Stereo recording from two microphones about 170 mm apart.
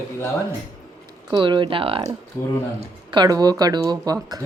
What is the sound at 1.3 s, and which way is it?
Speech, 25° right (ahead or behind).